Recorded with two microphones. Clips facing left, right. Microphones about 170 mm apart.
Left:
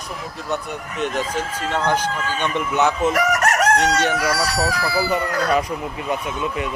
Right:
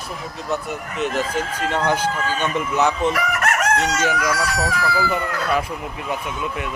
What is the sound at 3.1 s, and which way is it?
Chicken, 40° left (ahead or behind).